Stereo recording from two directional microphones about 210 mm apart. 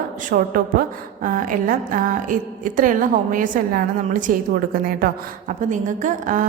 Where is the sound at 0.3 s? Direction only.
40° right (ahead or behind).